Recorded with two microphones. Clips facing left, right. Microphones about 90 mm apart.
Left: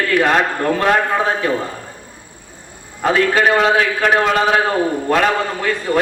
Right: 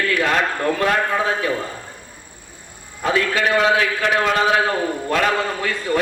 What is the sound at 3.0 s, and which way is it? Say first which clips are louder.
A man's voice: left 5 dB; 45° left (ahead or behind).